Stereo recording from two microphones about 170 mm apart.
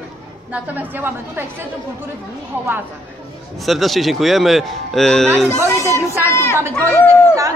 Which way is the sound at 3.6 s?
Centre (ahead or behind).